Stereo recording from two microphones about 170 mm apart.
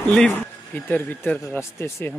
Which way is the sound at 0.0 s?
5° left (ahead or behind).